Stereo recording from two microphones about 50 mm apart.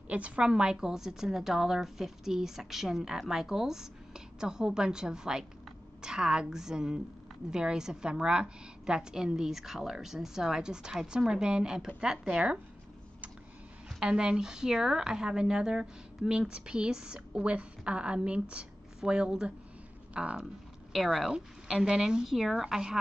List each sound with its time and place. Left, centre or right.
0.1 s a woman's voice: right
13.8 s a woman's voice: centre
20.9 s a woman's voice: centre
21.3 s a woman's voice: centre